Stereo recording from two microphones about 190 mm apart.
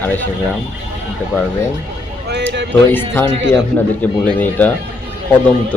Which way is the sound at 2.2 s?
65° right (ahead or behind).